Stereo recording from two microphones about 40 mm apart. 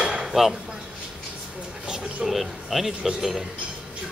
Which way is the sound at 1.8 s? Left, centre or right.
Centre.